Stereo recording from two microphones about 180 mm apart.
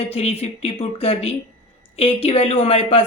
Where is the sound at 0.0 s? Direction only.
35° left (ahead or behind).